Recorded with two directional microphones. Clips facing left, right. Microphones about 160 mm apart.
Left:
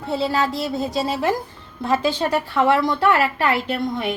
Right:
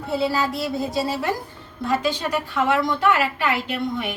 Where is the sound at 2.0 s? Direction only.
35° left (ahead or behind).